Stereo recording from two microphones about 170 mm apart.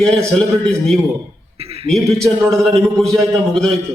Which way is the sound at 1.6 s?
35° right (ahead or behind).